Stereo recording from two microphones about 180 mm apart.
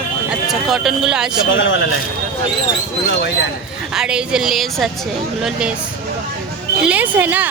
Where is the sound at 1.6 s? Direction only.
90° left.